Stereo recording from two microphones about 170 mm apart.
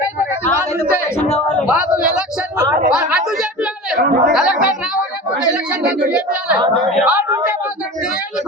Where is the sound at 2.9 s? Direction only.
5° right (ahead or behind).